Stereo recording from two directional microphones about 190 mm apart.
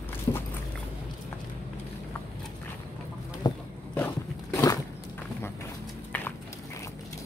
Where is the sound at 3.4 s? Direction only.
25° left (ahead or behind).